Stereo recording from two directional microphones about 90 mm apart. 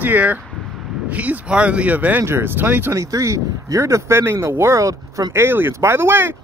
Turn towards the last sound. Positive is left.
turn(degrees=-25)  # may be behind; listen again after turning